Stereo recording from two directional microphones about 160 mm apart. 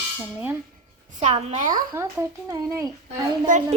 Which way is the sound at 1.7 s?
20° right (ahead or behind).